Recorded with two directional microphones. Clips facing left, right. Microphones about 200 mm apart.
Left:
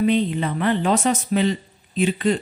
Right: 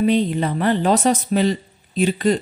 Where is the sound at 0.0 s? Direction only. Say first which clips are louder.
Right 2 dB; 40° right (ahead or behind).